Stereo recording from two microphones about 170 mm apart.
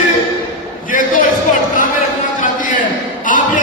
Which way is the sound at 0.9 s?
55° left (ahead or behind).